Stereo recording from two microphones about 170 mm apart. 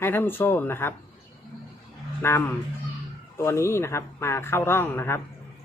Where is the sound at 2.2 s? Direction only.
15° left (ahead or behind).